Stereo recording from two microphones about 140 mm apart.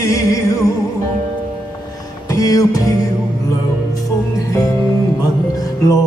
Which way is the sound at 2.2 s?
25° left (ahead or behind).